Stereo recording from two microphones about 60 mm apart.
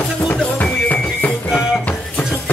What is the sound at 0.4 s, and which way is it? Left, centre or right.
Music, left.